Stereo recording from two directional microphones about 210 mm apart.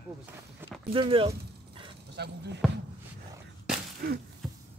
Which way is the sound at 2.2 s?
55° right (ahead or behind).